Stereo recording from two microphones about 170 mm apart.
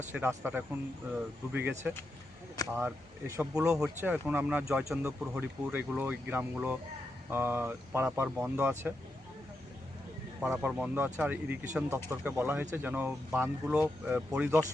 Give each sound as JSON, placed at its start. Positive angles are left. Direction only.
{"t": 0.1, "sound": "speech", "side_deg": -15}
{"t": 10.4, "sound": "speech", "side_deg": -5}